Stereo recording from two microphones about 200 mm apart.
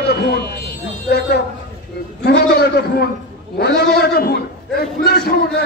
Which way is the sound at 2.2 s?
55° left (ahead or behind).